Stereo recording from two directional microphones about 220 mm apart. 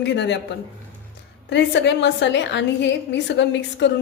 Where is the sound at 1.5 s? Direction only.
55° left (ahead or behind).